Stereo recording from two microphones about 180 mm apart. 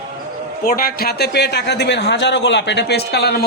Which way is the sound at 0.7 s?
55° left (ahead or behind).